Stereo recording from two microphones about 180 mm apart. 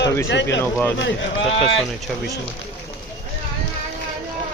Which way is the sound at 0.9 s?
90° left.